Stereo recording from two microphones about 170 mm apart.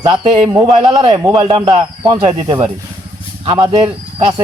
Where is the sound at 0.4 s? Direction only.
15° right (ahead or behind).